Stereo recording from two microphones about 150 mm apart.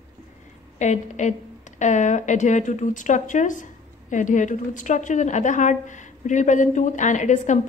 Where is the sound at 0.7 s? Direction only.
50° left (ahead or behind).